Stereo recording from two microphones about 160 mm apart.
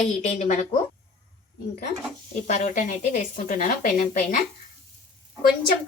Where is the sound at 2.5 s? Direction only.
50° left (ahead or behind).